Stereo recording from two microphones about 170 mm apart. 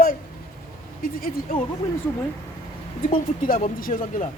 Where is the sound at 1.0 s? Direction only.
55° left (ahead or behind).